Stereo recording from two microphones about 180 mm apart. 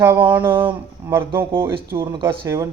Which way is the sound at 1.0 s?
15° right (ahead or behind).